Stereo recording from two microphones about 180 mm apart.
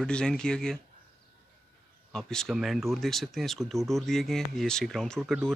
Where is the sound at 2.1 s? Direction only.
5° left (ahead or behind).